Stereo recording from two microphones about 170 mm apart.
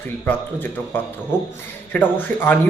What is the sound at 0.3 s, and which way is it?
A man's voice, 10° left (ahead or behind).